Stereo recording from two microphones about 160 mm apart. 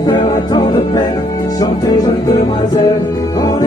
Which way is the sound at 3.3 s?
25° left (ahead or behind).